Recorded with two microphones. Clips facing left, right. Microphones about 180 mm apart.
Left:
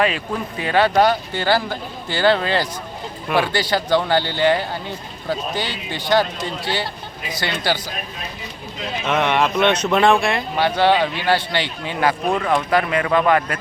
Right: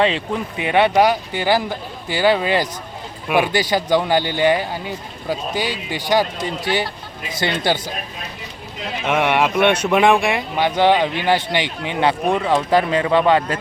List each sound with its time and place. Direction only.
0.0 s speech: 20° right (ahead or behind)
7.3 s speech: 20° right (ahead or behind)
9.0 s speech: 10° right (ahead or behind)